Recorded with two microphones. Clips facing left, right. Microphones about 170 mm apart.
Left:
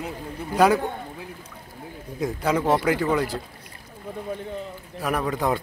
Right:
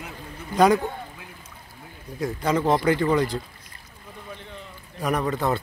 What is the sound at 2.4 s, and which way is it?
Speech, 10° left (ahead or behind).